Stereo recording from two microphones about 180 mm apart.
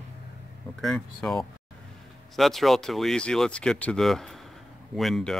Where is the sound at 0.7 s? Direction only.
Centre (ahead or behind).